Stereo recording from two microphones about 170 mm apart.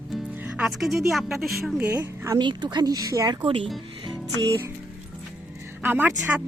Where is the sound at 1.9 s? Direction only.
20° right (ahead or behind).